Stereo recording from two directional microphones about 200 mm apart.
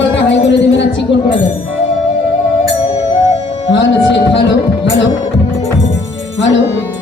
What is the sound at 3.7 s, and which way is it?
Speech, 60° left (ahead or behind).